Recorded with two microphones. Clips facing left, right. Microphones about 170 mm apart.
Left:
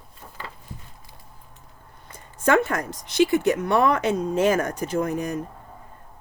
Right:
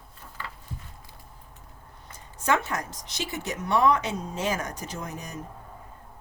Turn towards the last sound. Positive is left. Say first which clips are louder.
# left 12 dB
turn(degrees=60)  # may be behind; listen again after turning